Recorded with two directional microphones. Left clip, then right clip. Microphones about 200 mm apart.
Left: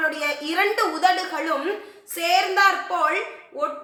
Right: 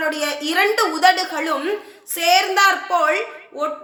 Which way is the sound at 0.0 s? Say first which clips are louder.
Right 2 dB; 35° right (ahead or behind).